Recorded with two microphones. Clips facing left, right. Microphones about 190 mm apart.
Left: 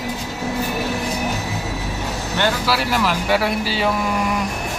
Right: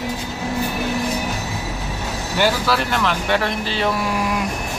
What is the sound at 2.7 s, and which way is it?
Speech, 5° left (ahead or behind).